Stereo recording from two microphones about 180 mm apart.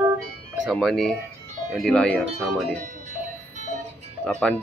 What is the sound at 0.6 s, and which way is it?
Speech, centre (ahead or behind).